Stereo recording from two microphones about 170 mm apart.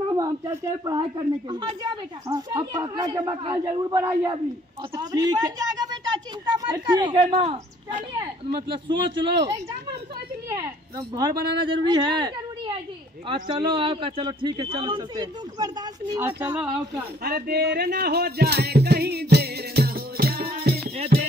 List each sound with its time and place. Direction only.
0.1 s a man's voice: 20° right (ahead or behind)
17.2 s music: 70° right (ahead or behind)